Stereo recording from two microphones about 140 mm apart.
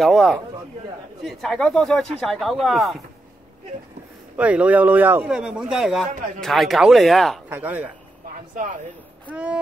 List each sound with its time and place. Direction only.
0.0 s speech: centre (ahead or behind)
4.4 s speech: 10° right (ahead or behind)
7.4 s speech: 10° right (ahead or behind)
8.5 s speech: 70° right (ahead or behind)
9.3 s speech: 10° right (ahead or behind)